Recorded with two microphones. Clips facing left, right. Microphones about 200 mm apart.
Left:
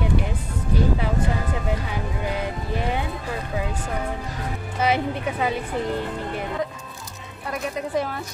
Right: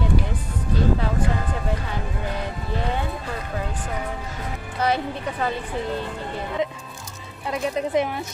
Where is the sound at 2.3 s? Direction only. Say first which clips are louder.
Left 2 dB; 15° left (ahead or behind).